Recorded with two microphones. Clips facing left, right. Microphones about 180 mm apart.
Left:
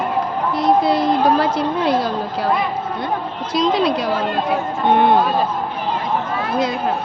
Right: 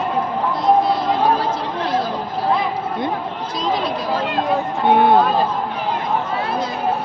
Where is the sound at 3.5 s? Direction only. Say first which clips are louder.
Left 6 dB; 80° left.